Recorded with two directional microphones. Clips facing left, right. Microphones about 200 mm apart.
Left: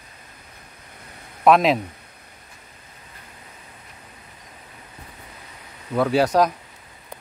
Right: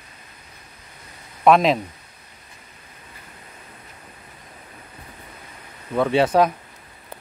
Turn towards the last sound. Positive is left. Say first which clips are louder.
# right 1 dB
turn(degrees=-5)  # may be behind; listen again after turning